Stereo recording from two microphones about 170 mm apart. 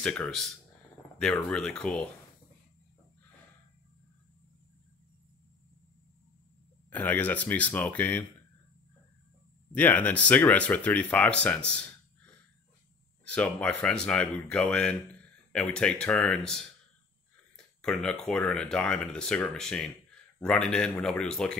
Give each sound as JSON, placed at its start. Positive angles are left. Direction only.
{"t": 0.0, "sound": "speech", "side_deg": 5}
{"t": 6.9, "sound": "speech", "side_deg": 10}
{"t": 9.7, "sound": "speech", "side_deg": 10}
{"t": 13.2, "sound": "speech", "side_deg": 5}